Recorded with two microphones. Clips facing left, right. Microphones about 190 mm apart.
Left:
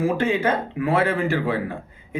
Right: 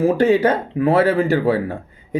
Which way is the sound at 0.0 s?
35° right (ahead or behind).